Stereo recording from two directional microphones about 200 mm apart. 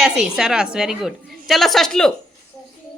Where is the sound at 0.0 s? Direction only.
Centre (ahead or behind).